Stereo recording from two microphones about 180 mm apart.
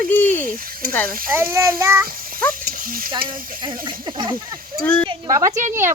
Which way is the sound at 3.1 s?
25° right (ahead or behind).